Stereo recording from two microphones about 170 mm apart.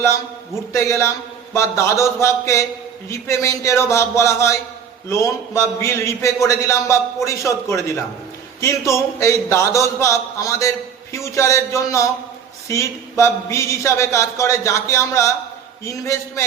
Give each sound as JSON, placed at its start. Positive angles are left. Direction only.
{"t": 0.7, "sound": "speech", "side_deg": 15}